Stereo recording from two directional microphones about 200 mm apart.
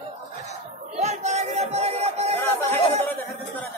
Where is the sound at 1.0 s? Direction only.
35° right (ahead or behind).